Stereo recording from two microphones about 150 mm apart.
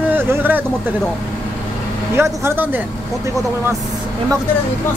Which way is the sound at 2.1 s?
15° right (ahead or behind).